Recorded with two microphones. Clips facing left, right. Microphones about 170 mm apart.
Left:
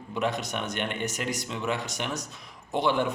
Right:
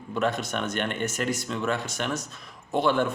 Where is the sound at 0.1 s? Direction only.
15° left (ahead or behind).